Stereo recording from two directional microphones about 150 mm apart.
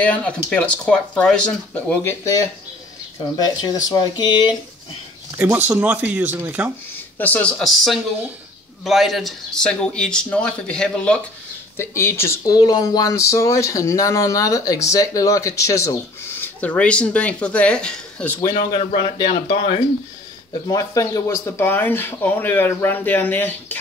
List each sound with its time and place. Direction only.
0.0 s speech: 10° left (ahead or behind)
3.3 s speech: 25° left (ahead or behind)
5.7 s speech: 10° right (ahead or behind)
7.2 s a man's voice: 10° left (ahead or behind)
11.7 s speech: 15° left (ahead or behind)
16.3 s speech: 10° left (ahead or behind)
18.9 s speech: 30° left (ahead or behind)
20.6 s speech: 20° left (ahead or behind)